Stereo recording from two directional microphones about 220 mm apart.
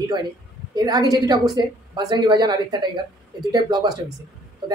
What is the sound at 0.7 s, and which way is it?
A woman's voice, 15° right (ahead or behind).